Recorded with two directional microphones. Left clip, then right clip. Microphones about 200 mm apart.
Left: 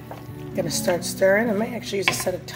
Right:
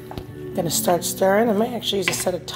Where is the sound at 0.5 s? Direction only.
25° right (ahead or behind).